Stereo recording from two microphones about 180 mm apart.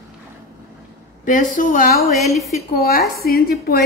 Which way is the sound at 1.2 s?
45° left (ahead or behind).